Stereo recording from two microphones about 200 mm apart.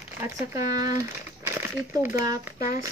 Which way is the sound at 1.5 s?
10° right (ahead or behind).